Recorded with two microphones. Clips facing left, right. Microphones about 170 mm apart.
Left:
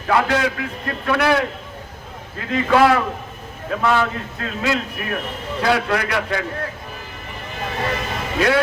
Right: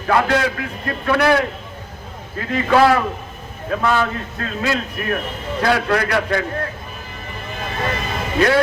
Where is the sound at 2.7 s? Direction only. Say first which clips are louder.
Right 1 dB; centre (ahead or behind).